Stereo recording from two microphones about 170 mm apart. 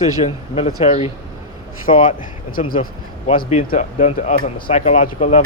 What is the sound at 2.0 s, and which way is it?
Speech, 50° left (ahead or behind).